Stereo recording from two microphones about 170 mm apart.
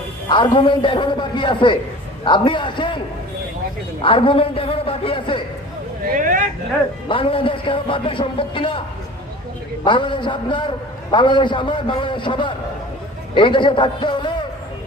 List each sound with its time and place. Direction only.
0.3 s a man's voice: 30° left (ahead or behind)
4.0 s a man's voice: 30° left (ahead or behind)
6.1 s speech: 50° right (ahead or behind)
7.1 s a man's voice: 30° left (ahead or behind)
9.8 s a man's voice: 30° left (ahead or behind)